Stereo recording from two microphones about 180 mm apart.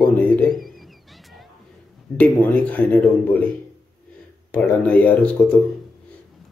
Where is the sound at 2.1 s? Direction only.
10° left (ahead or behind).